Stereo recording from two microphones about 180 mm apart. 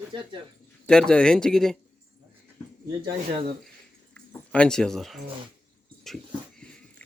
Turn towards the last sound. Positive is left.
turn(degrees=5)  # may be behind; listen again after turning